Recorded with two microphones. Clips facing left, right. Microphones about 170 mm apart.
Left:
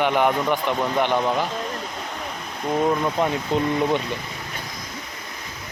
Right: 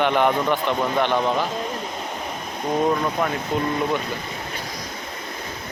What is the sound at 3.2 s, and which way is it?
Speech, 25° left (ahead or behind).